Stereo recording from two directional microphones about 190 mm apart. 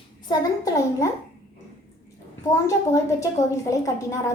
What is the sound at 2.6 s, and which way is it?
A woman's voice, 15° left (ahead or behind).